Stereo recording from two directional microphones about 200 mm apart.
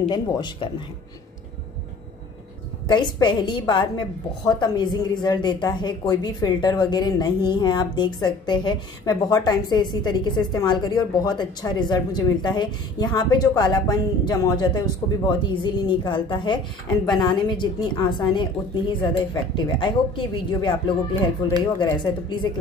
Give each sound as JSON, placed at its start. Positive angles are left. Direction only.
{"t": 0.1, "sound": "a woman's voice", "side_deg": 20}
{"t": 2.9, "sound": "a woman's voice", "side_deg": 20}